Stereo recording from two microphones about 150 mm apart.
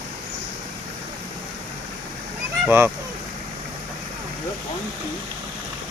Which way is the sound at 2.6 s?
15° right (ahead or behind).